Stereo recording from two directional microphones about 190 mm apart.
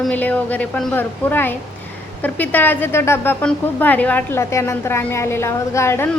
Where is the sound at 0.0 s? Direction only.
10° left (ahead or behind).